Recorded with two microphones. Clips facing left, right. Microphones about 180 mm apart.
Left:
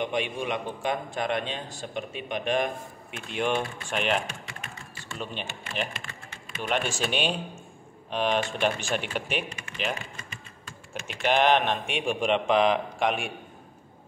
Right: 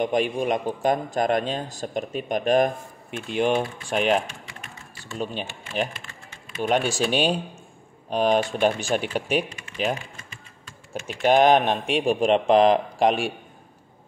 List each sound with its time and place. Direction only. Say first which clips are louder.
0.0 s a man's voice: right 6 dB; 40° right (ahead or behind)
5.2 s a man's voice: right 6 dB; 40° right (ahead or behind)
6.6 s a man's voice: right 6 dB; 35° right (ahead or behind)
10.9 s a man's voice: right 6 dB; 40° right (ahead or behind)